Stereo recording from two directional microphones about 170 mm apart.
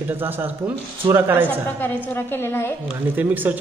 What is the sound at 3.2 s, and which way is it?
Speech, 10° right (ahead or behind).